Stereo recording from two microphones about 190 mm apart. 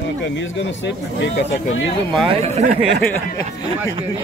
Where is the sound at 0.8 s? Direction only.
70° left (ahead or behind).